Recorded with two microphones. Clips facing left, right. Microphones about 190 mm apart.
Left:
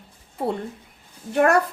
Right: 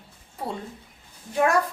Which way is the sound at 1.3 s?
65° left (ahead or behind).